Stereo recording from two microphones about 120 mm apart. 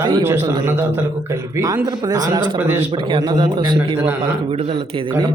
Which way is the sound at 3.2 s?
40° right (ahead or behind).